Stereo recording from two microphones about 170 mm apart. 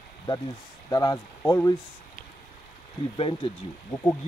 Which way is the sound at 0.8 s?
20° left (ahead or behind).